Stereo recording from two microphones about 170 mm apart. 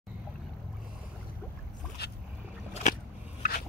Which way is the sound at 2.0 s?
70° left (ahead or behind).